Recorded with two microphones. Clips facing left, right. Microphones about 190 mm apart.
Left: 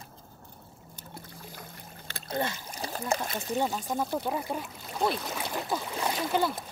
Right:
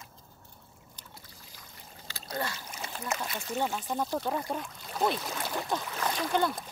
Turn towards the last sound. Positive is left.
turn(degrees=5)  # may be behind; listen again after turning